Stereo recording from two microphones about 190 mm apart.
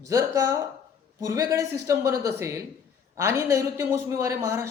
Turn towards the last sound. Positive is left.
turn(degrees=-15)  # may be behind; listen again after turning